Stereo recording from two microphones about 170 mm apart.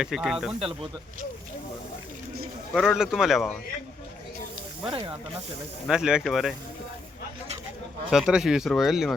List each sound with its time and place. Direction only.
0.0 s speech: 5° right (ahead or behind)
2.7 s speech: 5° right (ahead or behind)
4.9 s speech: 30° right (ahead or behind)
5.9 s speech: 5° right (ahead or behind)
8.1 s speech: 5° right (ahead or behind)